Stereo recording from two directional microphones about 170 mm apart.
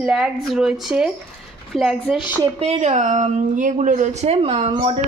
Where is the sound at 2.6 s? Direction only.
40° right (ahead or behind).